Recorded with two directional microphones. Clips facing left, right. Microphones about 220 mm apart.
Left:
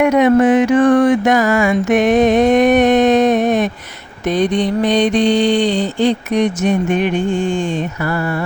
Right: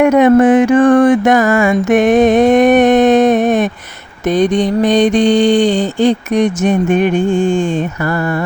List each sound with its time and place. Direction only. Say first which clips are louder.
0.0 s mantra: right 3 dB; 50° right (ahead or behind)